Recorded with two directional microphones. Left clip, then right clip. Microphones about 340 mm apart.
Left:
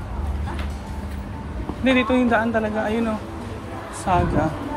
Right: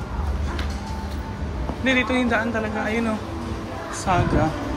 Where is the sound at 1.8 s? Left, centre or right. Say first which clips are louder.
Left 2 dB; centre.